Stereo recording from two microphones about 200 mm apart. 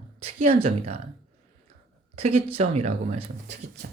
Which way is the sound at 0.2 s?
30° right (ahead or behind).